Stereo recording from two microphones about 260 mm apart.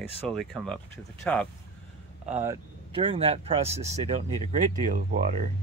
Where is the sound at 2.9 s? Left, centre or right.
Right.